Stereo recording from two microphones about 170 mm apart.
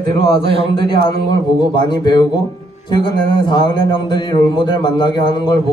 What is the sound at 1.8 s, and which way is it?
A man's voice, 25° left (ahead or behind).